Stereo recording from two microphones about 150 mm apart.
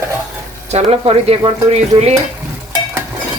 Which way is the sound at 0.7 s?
45° right (ahead or behind).